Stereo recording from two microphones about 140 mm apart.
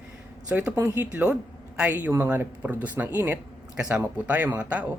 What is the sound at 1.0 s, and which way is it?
Speech, 10° right (ahead or behind).